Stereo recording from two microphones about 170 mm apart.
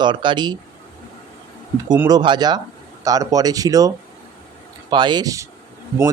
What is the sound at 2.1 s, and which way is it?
Speech, 25° right (ahead or behind).